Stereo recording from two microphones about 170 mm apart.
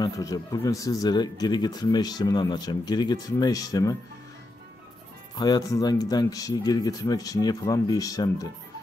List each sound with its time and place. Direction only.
0.0 s speech: 20° left (ahead or behind)
5.3 s speech: 25° left (ahead or behind)